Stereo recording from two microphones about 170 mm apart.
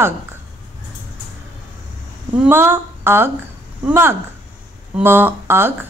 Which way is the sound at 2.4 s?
15° right (ahead or behind).